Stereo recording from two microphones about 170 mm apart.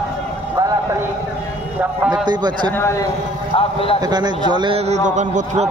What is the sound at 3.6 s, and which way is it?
Speech, 35° left (ahead or behind).